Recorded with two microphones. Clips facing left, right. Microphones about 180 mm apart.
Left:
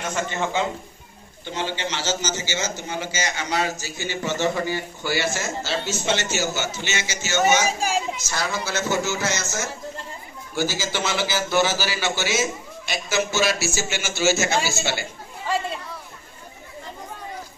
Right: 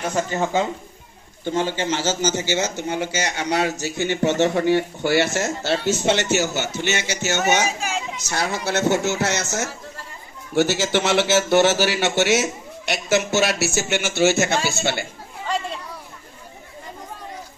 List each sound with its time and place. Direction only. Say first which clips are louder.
0.0 s a man's voice: right 3 dB; 35° right (ahead or behind); by 7.6 s 65° right (ahead or behind)
7.6 s a child's voice: left 2 dB; 35° left (ahead or behind)
8.3 s a man's voice: right 3 dB; 65° right (ahead or behind)